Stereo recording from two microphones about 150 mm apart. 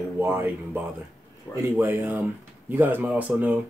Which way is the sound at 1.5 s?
15° left (ahead or behind).